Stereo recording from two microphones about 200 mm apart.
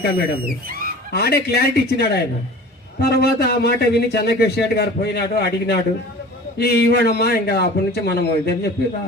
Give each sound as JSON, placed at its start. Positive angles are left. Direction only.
{"t": 0.4, "sound": "speech", "side_deg": -45}
{"t": 1.1, "sound": "a man's voice", "side_deg": 55}